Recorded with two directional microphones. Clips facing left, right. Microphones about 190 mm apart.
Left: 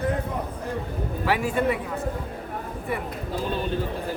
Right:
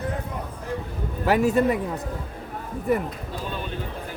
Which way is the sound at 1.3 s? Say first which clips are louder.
Right 4 dB; 40° right (ahead or behind).